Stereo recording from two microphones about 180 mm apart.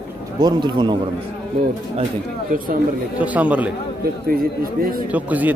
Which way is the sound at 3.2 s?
10° right (ahead or behind).